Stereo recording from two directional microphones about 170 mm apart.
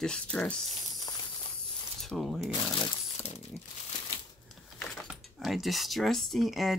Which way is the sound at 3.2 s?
35° left (ahead or behind).